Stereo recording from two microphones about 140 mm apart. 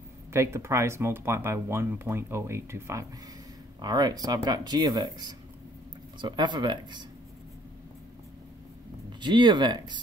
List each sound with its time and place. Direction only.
0.3 s speech: 20° right (ahead or behind)
6.2 s speech: 35° right (ahead or behind)
9.2 s speech: 35° right (ahead or behind)